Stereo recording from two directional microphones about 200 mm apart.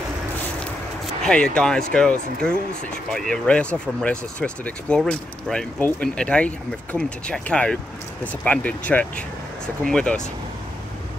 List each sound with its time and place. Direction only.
1.2 s speech: 5° left (ahead or behind)